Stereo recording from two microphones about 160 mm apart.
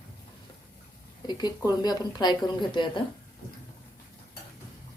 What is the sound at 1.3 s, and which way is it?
Speech, 25° left (ahead or behind).